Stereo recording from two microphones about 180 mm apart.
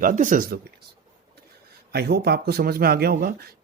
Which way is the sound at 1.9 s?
60° right (ahead or behind).